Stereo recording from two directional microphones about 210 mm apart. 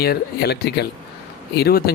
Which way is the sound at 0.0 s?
50° left (ahead or behind).